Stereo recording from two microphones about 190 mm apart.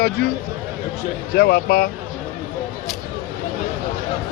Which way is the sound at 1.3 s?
55° left (ahead or behind).